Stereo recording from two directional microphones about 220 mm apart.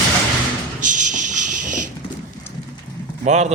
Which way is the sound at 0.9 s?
35° right (ahead or behind).